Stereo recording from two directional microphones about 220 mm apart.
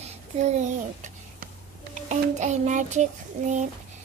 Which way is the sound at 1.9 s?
35° right (ahead or behind).